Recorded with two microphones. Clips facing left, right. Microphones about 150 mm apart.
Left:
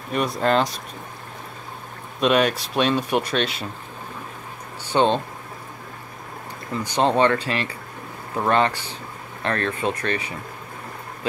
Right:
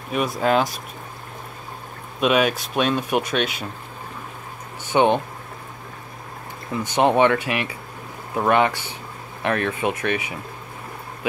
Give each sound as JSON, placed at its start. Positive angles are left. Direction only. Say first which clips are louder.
{"t": 0.1, "sound": "speech", "louder": "right 1 dB", "side_deg": -5}
{"t": 2.1, "sound": "speech", "louder": "even", "side_deg": -5}
{"t": 4.9, "sound": "speech", "louder": "right 2 dB", "side_deg": -15}
{"t": 6.7, "sound": "speech", "louder": "right 2 dB", "side_deg": -20}